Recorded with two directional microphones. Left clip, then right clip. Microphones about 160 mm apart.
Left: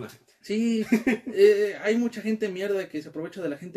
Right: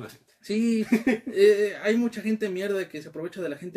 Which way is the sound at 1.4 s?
20° right (ahead or behind).